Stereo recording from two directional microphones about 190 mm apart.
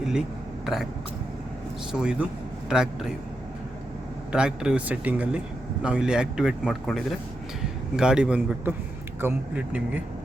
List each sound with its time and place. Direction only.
0.1 s a sound: centre (ahead or behind)
1.9 s a man's voice: 5° right (ahead or behind)
4.3 s a man's voice: 5° right (ahead or behind)